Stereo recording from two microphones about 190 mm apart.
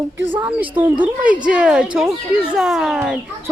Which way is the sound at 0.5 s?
10° right (ahead or behind).